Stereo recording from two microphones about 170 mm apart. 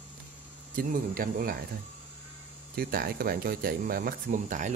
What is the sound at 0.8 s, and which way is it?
Speech, 60° right (ahead or behind).